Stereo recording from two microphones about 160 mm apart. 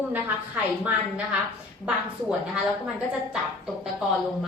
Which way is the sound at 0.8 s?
10° right (ahead or behind).